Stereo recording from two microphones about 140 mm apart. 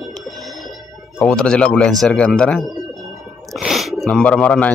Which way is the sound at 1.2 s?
5° left (ahead or behind).